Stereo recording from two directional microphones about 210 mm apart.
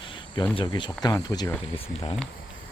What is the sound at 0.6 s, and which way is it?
Speech, 25° left (ahead or behind).